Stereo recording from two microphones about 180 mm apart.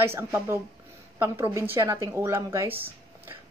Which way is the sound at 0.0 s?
15° right (ahead or behind).